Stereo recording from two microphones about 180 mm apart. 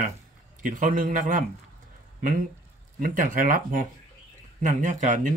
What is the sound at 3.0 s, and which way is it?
Speech, 50° right (ahead or behind).